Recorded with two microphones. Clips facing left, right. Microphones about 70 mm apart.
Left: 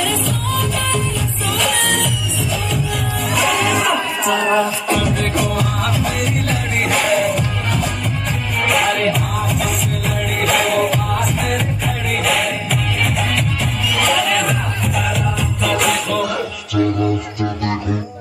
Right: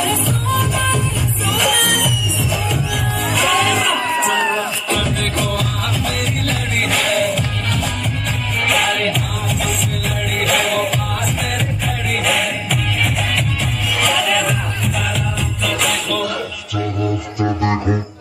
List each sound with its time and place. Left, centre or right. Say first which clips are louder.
0.0 s music: right 1 dB; centre
3.3 s music: even; centre
13.9 s music: left 1 dB; centre
15.6 s music: left 3 dB; centre
17.4 s music: right 3 dB; right